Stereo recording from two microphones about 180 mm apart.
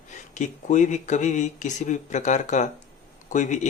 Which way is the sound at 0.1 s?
45° left (ahead or behind).